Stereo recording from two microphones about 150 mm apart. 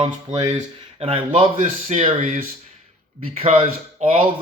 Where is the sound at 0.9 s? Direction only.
40° right (ahead or behind).